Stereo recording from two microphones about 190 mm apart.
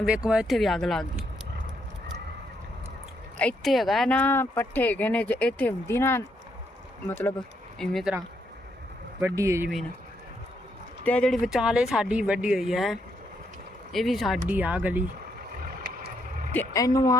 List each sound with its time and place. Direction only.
0.0 s speech: 5° right (ahead or behind)
3.3 s speech: 5° left (ahead or behind)
9.2 s speech: 15° right (ahead or behind)
11.0 s speech: 5° left (ahead or behind)
15.6 s vehicle: 45° right (ahead or behind)
16.5 s speech: 15° left (ahead or behind)